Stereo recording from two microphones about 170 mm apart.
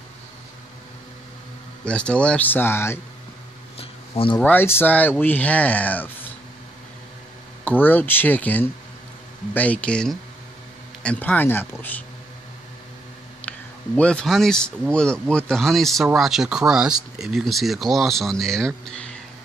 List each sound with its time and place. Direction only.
1.9 s speech: 5° left (ahead or behind)
3.7 s a sound: 35° left (ahead or behind)
4.4 s speech: 10° left (ahead or behind)
7.6 s speech: 10° left (ahead or behind)
13.5 s speech: 5° left (ahead or behind)